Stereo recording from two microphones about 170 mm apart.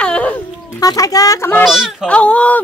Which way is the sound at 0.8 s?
20° left (ahead or behind).